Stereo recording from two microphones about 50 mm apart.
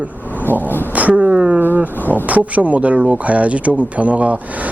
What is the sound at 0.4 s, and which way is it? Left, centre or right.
Vehicle, left.